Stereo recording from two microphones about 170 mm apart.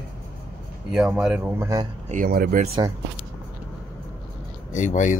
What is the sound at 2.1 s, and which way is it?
Speech, 55° right (ahead or behind).